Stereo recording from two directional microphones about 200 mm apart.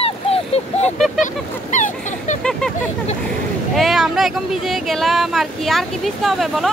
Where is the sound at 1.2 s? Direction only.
40° left (ahead or behind).